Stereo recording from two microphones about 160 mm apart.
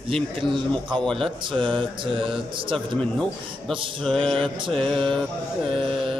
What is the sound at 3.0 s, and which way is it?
A man's voice, 5° left (ahead or behind).